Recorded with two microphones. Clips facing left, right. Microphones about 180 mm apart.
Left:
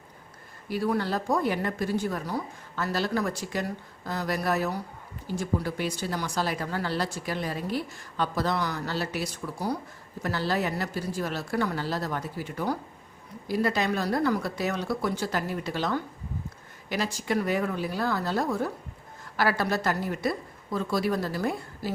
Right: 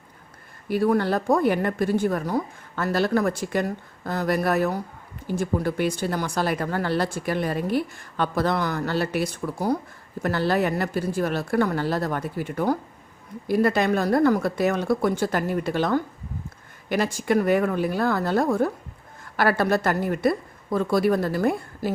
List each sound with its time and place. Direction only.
0.7 s speech: 55° right (ahead or behind)